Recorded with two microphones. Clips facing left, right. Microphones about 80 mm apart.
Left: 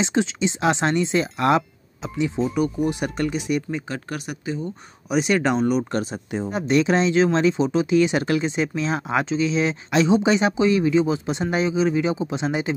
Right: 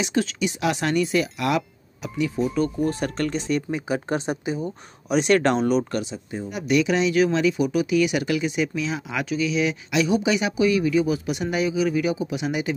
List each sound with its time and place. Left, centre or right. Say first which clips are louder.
0.0 s speech: left 2 dB; left
4.1 s speech: right 4 dB; right
5.1 s speech: right 1 dB; centre
6.5 s speech: left 2 dB; left